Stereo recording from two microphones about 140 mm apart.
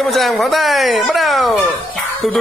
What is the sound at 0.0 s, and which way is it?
Speech, centre (ahead or behind).